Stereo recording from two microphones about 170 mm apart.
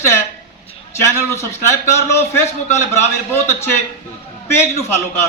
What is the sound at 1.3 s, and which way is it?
A man's voice, 15° left (ahead or behind).